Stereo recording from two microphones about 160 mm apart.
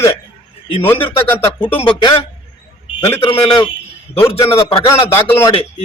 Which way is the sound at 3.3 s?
35° left (ahead or behind).